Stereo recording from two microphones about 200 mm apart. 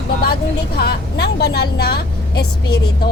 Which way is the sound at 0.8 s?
55° left (ahead or behind).